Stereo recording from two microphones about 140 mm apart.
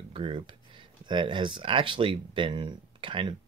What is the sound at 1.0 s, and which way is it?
Speech, 35° right (ahead or behind).